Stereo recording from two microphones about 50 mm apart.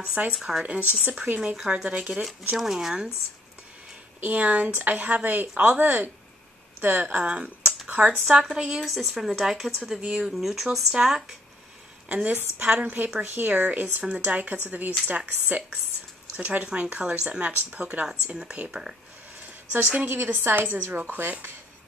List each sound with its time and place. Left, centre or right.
0.3 s speech: centre
1.2 s speech: right
1.5 s speech: centre
2.2 s speech: centre
4.2 s speech: right
8.3 s speech: centre
8.8 s speech: centre
12.1 s speech: right
12.4 s speech: right
17.5 s speech: right
17.7 s speech: right
20.1 s speech: right